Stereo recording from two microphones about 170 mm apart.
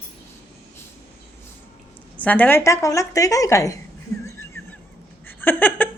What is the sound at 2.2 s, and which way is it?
A woman's voice, 10° left (ahead or behind).